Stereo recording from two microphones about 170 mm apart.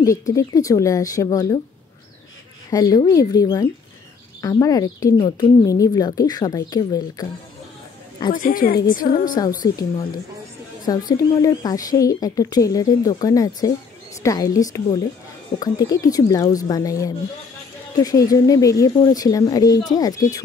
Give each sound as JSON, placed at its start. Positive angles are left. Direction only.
{"t": 0.3, "sound": "speech", "side_deg": 20}
{"t": 2.7, "sound": "speech", "side_deg": 20}
{"t": 8.3, "sound": "a woman's voice", "side_deg": 55}
{"t": 9.6, "sound": "speech", "side_deg": 20}